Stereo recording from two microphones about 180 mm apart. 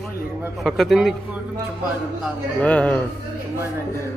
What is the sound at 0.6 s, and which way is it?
Speech, centre (ahead or behind).